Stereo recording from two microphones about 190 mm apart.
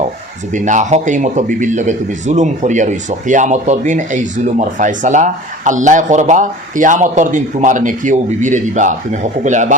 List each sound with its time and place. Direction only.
0.5 s a man's voice: 40° right (ahead or behind)